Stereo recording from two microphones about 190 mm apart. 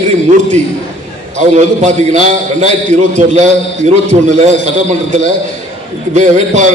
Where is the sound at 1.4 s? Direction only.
40° right (ahead or behind).